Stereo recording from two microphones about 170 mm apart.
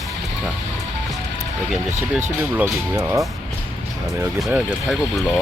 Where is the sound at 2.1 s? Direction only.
15° right (ahead or behind).